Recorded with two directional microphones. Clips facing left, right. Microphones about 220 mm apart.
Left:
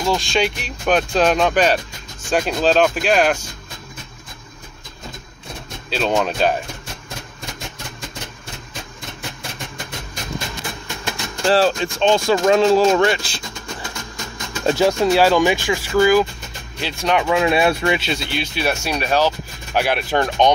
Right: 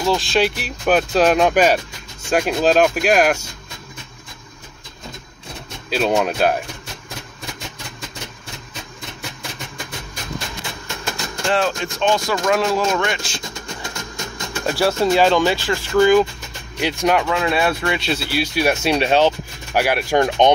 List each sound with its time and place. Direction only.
0.0 s speech: centre (ahead or behind)
5.9 s speech: 10° right (ahead or behind)
11.4 s speech: 35° left (ahead or behind)
14.7 s speech: 20° left (ahead or behind)
15.0 s speech: 5° left (ahead or behind)
16.8 s speech: 15° right (ahead or behind)
17.2 s speech: 20° left (ahead or behind)
18.0 s speech: 5° right (ahead or behind)
18.9 s speech: 25° right (ahead or behind)
19.7 s speech: 10° right (ahead or behind)